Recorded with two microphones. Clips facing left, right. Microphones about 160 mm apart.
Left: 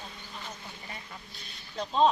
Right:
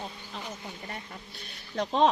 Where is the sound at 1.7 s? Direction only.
75° right (ahead or behind).